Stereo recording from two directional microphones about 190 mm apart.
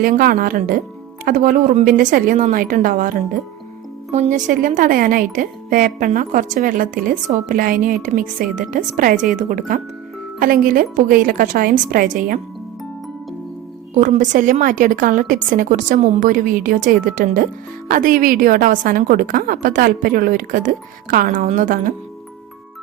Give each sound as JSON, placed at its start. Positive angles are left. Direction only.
{"t": 0.0, "sound": "a woman's voice", "side_deg": -50}
{"t": 13.9, "sound": "a woman's voice", "side_deg": -40}